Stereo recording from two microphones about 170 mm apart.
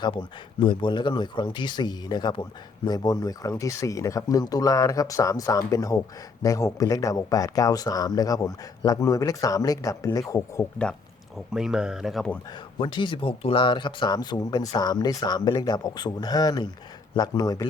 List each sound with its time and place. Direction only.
0.0 s speech: 30° left (ahead or behind)
11.5 s speech: 5° right (ahead or behind)
12.8 s speech: 30° left (ahead or behind)